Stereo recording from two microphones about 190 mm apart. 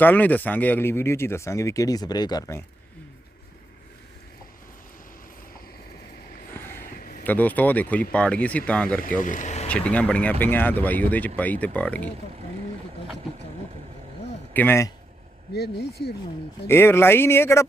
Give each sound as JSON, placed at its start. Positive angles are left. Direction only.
{"t": 0.0, "sound": "speech", "side_deg": 10}
{"t": 6.5, "sound": "a sound", "side_deg": 10}
{"t": 7.0, "sound": "a sound", "side_deg": 50}
{"t": 7.3, "sound": "speech", "side_deg": 10}
{"t": 9.0, "sound": "speech", "side_deg": 45}
{"t": 9.6, "sound": "speech", "side_deg": 5}
{"t": 14.5, "sound": "speech", "side_deg": 10}
{"t": 15.5, "sound": "speech", "side_deg": 55}
{"t": 16.6, "sound": "speech", "side_deg": 10}